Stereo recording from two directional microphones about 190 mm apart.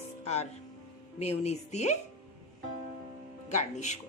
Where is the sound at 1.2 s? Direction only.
35° left (ahead or behind).